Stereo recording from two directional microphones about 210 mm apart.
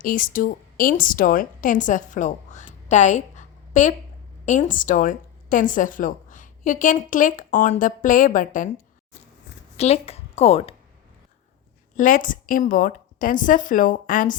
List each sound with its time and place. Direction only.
0.0 s a woman's voice: 40° left (ahead or behind)
9.7 s a woman's voice: 30° left (ahead or behind)
11.9 s a woman's voice: 40° left (ahead or behind)